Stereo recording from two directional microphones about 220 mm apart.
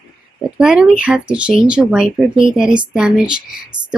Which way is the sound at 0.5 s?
5° right (ahead or behind).